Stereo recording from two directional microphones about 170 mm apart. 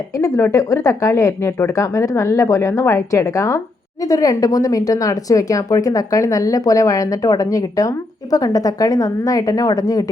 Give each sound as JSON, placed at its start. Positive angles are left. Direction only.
{"t": 0.2, "sound": "speech", "side_deg": 20}